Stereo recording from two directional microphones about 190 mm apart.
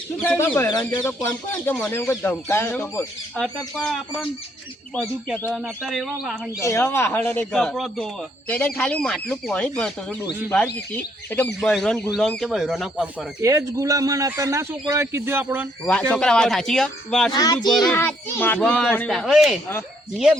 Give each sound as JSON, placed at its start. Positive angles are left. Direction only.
{"t": 0.2, "sound": "speech", "side_deg": 10}
{"t": 5.5, "sound": "speech", "side_deg": 0}
{"t": 6.6, "sound": "speech", "side_deg": 15}
{"t": 15.8, "sound": "speech", "side_deg": 5}
{"t": 17.3, "sound": "speech", "side_deg": 20}
{"t": 17.7, "sound": "speech", "side_deg": 0}
{"t": 17.9, "sound": "speech", "side_deg": 10}